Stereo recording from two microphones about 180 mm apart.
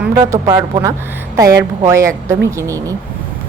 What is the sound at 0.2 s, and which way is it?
A woman's voice, 20° right (ahead or behind).